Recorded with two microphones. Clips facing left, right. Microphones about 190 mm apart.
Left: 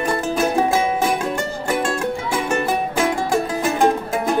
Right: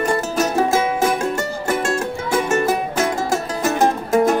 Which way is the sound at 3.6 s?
40° right (ahead or behind).